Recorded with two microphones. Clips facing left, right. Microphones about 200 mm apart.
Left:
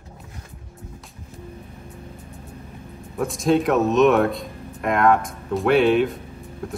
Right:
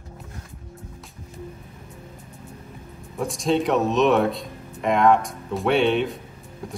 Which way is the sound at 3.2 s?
Centre (ahead or behind).